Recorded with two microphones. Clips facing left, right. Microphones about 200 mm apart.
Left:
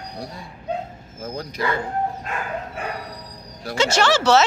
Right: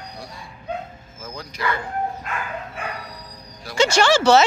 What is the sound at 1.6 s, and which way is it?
Speech, 25° left (ahead or behind).